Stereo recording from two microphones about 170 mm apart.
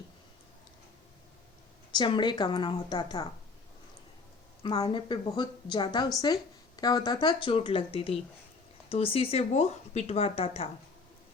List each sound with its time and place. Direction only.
2.0 s speech: 25° left (ahead or behind)
4.8 s speech: 30° left (ahead or behind)